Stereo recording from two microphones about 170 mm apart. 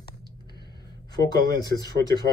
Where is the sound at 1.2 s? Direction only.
25° left (ahead or behind).